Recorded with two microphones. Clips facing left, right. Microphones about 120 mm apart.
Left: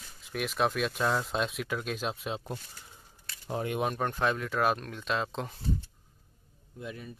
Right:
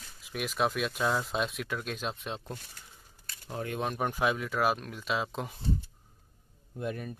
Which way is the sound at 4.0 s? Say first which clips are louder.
Even; 10° right (ahead or behind).